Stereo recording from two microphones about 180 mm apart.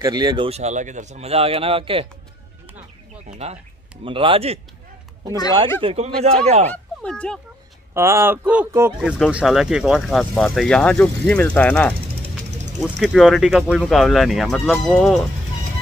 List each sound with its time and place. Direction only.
0.0 s a man's voice: 25° right (ahead or behind)
0.5 s speech: 40° right (ahead or behind)
3.3 s a man's voice: 35° right (ahead or behind)
5.8 s speech: 35° right (ahead or behind)
7.0 s speech: 5° left (ahead or behind)
7.9 s speech: 15° right (ahead or behind); by 15.2 s centre (ahead or behind)